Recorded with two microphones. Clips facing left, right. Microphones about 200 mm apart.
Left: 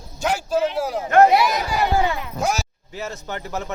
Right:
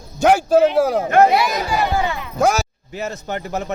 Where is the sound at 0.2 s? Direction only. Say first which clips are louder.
Right 8 dB; 60° right (ahead or behind).